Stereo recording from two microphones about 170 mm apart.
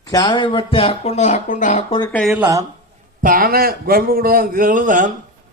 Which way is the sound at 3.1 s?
55° right (ahead or behind).